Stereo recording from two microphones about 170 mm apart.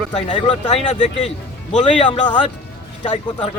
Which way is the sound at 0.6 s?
45° left (ahead or behind).